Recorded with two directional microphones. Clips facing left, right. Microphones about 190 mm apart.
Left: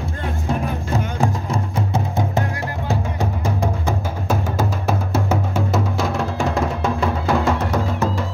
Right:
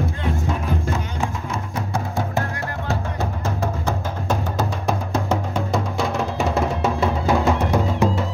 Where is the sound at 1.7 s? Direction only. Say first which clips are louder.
Left 1 dB; 20° left (ahead or behind).